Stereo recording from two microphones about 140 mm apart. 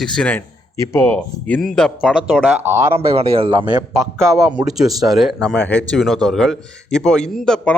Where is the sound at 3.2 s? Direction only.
40° right (ahead or behind).